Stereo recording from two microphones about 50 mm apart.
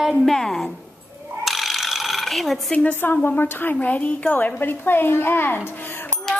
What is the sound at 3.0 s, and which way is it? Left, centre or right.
A woman's voice, left.